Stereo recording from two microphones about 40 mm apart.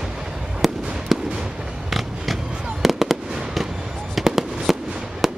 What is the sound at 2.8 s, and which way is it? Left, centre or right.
Fireworks, centre.